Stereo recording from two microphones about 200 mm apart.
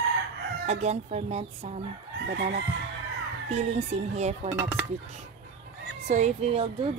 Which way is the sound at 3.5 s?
30° right (ahead or behind).